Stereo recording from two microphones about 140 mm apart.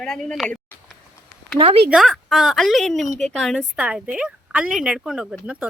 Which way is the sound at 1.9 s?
Centre (ahead or behind).